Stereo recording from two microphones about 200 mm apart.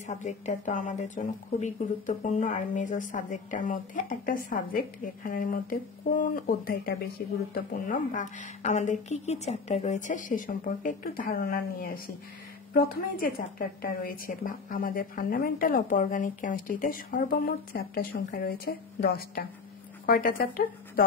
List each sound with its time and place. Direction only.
0.0 s a woman's voice: 35° left (ahead or behind)